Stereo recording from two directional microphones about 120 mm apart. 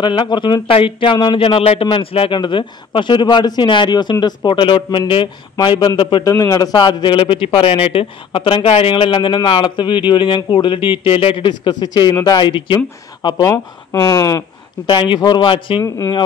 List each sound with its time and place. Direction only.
0.0 s speech: 40° left (ahead or behind)
6.2 s a man's voice: 25° left (ahead or behind)
14.9 s speech: 40° left (ahead or behind)
15.8 s speech: 25° left (ahead or behind)